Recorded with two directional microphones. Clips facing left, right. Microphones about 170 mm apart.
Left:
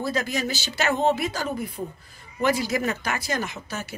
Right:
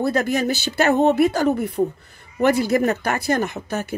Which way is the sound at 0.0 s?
55° right (ahead or behind).